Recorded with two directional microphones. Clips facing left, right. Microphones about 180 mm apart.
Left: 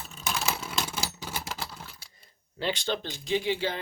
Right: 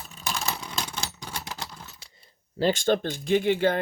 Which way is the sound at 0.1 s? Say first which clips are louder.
Even; centre (ahead or behind).